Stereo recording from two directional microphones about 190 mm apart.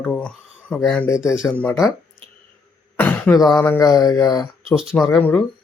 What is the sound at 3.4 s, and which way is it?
Speech, 20° left (ahead or behind).